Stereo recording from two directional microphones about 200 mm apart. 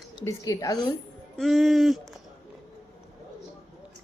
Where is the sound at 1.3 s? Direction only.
Centre (ahead or behind).